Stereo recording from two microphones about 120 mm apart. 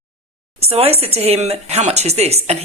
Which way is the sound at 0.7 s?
55° right (ahead or behind).